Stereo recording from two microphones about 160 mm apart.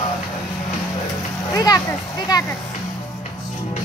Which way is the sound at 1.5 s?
25° left (ahead or behind).